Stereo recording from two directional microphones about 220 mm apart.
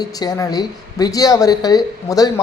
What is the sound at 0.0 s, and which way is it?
A woman's voice, 15° left (ahead or behind).